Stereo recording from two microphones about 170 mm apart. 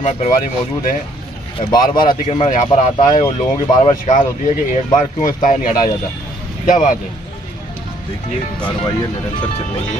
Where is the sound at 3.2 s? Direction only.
25° left (ahead or behind).